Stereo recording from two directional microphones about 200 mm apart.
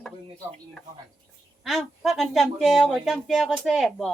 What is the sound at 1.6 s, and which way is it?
Speech, centre (ahead or behind).